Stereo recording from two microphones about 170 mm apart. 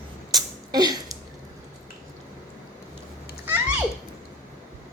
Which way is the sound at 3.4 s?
10° right (ahead or behind).